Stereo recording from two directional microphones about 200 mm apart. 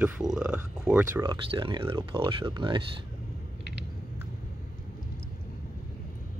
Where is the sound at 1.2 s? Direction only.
25° right (ahead or behind).